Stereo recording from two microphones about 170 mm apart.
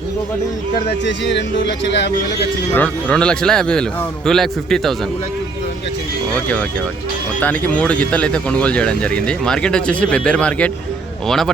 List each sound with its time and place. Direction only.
0.9 s speech: 90° left
2.7 s speech: 5° left (ahead or behind)
6.3 s speech: 10° left (ahead or behind)